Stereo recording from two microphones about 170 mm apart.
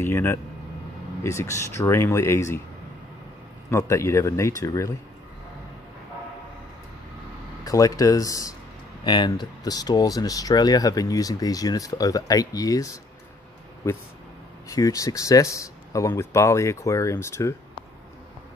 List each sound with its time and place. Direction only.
0.0 s speech: 15° left (ahead or behind)
3.7 s speech: 15° left (ahead or behind)
7.6 s speech: 20° left (ahead or behind)